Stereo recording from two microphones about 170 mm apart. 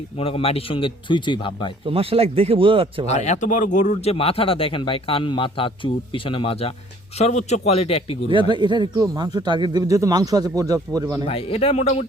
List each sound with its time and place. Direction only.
0.2 s speech: 35° left (ahead or behind)
1.9 s speech: 35° right (ahead or behind)
3.1 s speech: 45° left (ahead or behind)
8.3 s speech: 30° right (ahead or behind)
11.3 s speech: 35° left (ahead or behind)